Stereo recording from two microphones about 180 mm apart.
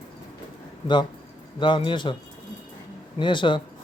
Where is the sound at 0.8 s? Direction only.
25° left (ahead or behind).